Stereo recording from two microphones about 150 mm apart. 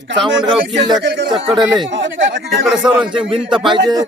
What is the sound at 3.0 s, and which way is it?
Speech, 35° right (ahead or behind).